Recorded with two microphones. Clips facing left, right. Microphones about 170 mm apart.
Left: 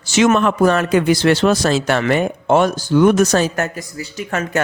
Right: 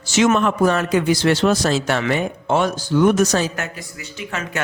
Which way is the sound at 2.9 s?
70° left (ahead or behind).